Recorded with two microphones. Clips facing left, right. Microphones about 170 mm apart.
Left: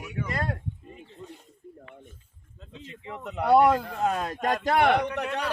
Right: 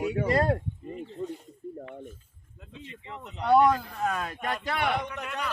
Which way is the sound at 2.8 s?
50° left (ahead or behind).